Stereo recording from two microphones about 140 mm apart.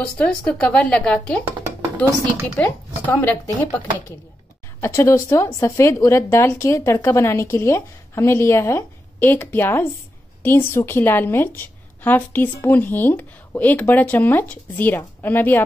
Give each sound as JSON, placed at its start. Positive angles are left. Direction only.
{"t": 0.0, "sound": "a woman's voice", "side_deg": 10}
{"t": 2.5, "sound": "a woman's voice", "side_deg": 15}